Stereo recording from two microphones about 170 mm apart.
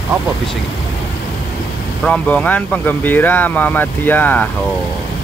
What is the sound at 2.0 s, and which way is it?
Speech, 10° left (ahead or behind).